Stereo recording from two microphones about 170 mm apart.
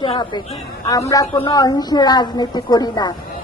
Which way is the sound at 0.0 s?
25° left (ahead or behind).